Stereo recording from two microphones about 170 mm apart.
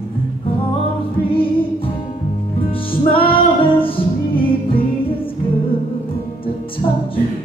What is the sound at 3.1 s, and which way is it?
Music, 30° left (ahead or behind).